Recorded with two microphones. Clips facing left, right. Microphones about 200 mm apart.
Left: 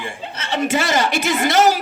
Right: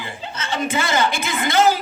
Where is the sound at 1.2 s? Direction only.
40° left (ahead or behind).